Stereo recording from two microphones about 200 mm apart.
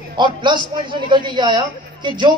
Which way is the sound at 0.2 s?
25° right (ahead or behind).